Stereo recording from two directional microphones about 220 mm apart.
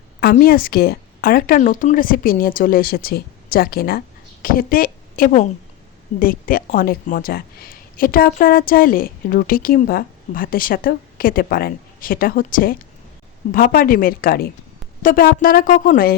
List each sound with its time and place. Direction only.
0.2 s a woman's voice: 40° left (ahead or behind)